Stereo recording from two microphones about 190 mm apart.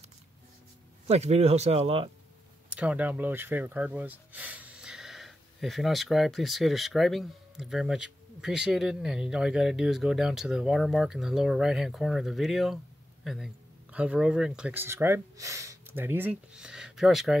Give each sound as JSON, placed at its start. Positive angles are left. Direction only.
{"t": 1.0, "sound": "speech", "side_deg": -35}
{"t": 2.7, "sound": "speech", "side_deg": -5}